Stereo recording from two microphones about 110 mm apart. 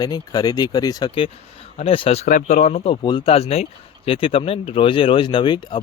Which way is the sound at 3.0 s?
45° left (ahead or behind).